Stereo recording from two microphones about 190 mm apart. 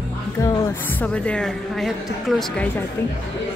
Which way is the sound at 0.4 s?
15° left (ahead or behind).